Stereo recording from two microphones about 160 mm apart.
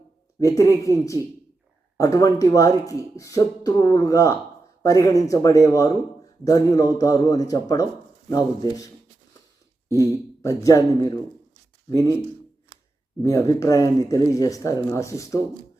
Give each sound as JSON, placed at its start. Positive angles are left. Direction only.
{"t": 0.3, "sound": "speech", "side_deg": 20}
{"t": 10.4, "sound": "speech", "side_deg": 20}
{"t": 13.2, "sound": "speech", "side_deg": 20}